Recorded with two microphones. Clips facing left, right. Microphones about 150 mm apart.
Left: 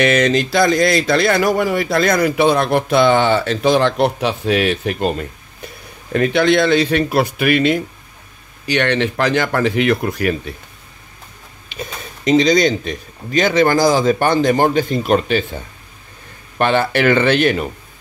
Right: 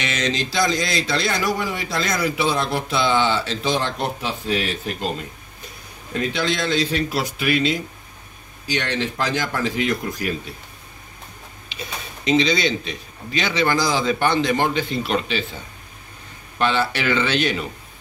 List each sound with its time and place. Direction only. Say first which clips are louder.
0.0 s speech: left 10 dB; 55° left (ahead or behind)
6.1 s speech: left 9 dB; 60° left (ahead or behind)
11.7 s a sound: left 6 dB; 50° left (ahead or behind)
12.3 s a man's voice: left 6 dB; 45° left (ahead or behind)
16.5 s a man's voice: left 6 dB; 55° left (ahead or behind)